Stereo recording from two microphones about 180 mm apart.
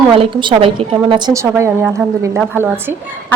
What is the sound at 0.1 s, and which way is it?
A woman's voice, 30° right (ahead or behind).